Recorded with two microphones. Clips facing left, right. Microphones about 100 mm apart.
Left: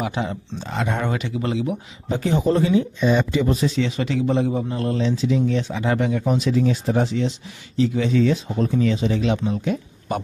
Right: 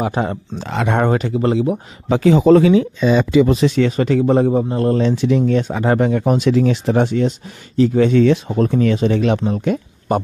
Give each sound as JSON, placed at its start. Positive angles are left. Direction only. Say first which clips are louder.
{"t": 0.0, "sound": "a man's voice", "louder": "right 5 dB", "side_deg": -45}
{"t": 0.6, "sound": "speech", "louder": "right 7 dB", "side_deg": -70}
{"t": 1.0, "sound": "speech", "louder": "right 8 dB", "side_deg": -40}
{"t": 2.0, "sound": "speech", "louder": "right 9 dB", "side_deg": -90}
{"t": 3.9, "sound": "a man's voice", "louder": "right 7 dB", "side_deg": -45}
{"t": 5.0, "sound": "speech", "louder": "right 5 dB", "side_deg": -65}
{"t": 9.4, "sound": "speech", "louder": "right 5 dB", "side_deg": -45}